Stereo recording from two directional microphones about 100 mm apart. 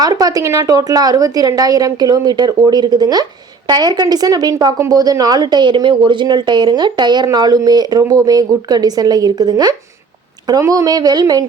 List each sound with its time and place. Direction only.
0.0 s a woman's voice: 40° right (ahead or behind)